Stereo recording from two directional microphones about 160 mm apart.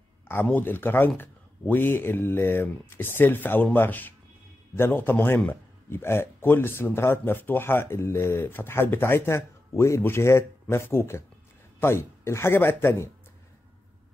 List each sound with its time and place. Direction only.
0.3 s a man's voice: 10° left (ahead or behind)